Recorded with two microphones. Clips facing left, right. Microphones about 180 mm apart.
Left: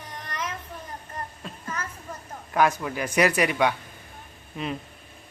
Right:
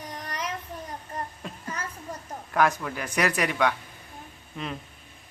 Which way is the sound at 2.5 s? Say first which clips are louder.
Left 1 dB; 5° left (ahead or behind).